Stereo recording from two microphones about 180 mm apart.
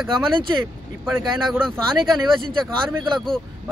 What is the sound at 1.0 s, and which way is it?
Speech, centre (ahead or behind).